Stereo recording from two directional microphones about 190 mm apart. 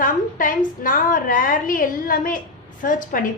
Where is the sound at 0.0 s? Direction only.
45° left (ahead or behind).